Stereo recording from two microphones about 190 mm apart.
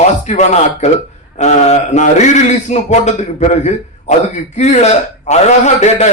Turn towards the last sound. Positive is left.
turn(degrees=35)  # may be behind; listen again after turning